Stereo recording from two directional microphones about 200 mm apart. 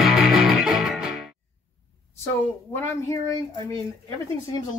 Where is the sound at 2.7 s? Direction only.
15° left (ahead or behind).